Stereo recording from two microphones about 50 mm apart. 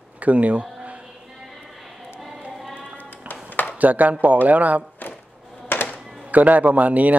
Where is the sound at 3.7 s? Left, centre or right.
Right.